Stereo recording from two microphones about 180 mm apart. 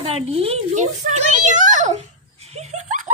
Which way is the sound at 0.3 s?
35° right (ahead or behind).